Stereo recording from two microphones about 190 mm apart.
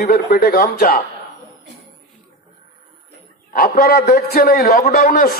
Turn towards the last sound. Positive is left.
turn(degrees=50)  # may be behind; listen again after turning